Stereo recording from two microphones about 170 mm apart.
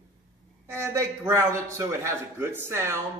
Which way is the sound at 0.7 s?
15° right (ahead or behind).